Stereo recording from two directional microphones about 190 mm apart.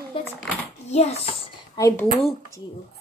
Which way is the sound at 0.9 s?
35° left (ahead or behind).